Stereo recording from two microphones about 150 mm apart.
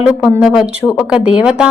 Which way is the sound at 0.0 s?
5° right (ahead or behind).